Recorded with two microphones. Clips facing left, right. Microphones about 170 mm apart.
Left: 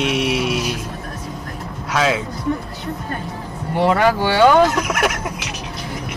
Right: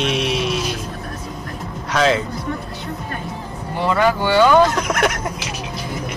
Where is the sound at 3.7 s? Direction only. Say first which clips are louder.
Left 2 dB; 65° left (ahead or behind).